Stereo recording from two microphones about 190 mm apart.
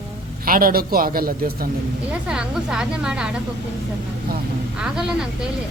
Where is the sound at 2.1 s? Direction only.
5° right (ahead or behind).